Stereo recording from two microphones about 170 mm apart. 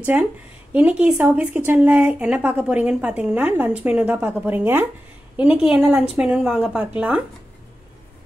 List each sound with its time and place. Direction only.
0.1 s a woman's voice: 10° right (ahead or behind)